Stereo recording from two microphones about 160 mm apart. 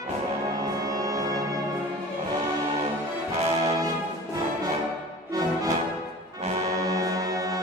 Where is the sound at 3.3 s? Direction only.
45° right (ahead or behind).